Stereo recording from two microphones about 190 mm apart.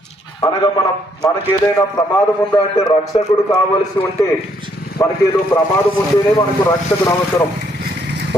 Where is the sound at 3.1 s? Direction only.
30° left (ahead or behind).